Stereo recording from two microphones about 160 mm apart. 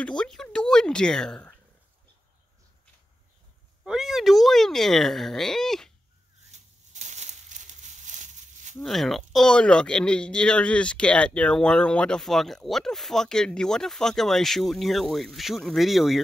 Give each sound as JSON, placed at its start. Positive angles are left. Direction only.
{"t": 0.0, "sound": "speech", "side_deg": 5}
{"t": 3.8, "sound": "speech", "side_deg": 0}
{"t": 6.5, "sound": "a sound", "side_deg": -50}
{"t": 8.7, "sound": "speech", "side_deg": 0}